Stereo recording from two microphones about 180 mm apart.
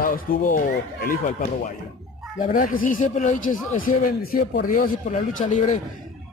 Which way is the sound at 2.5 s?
50° left (ahead or behind).